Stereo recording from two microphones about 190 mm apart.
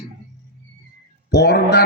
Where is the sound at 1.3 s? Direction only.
60° left (ahead or behind).